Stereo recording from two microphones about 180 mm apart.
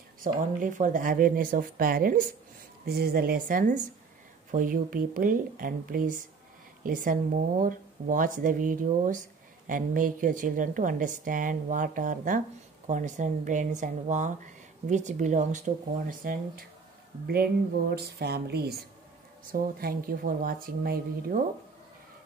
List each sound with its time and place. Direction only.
0.2 s a woman's voice: 45° right (ahead or behind)
17.9 s a woman's voice: 65° right (ahead or behind)